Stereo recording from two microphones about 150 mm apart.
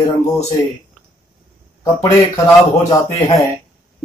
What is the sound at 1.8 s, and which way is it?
Speech, 25° left (ahead or behind).